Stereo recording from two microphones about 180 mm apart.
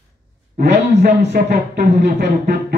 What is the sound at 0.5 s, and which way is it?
Speech, 65° right (ahead or behind).